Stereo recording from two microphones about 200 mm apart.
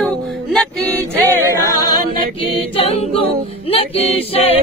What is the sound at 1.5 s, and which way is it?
Female singing, 15° left (ahead or behind).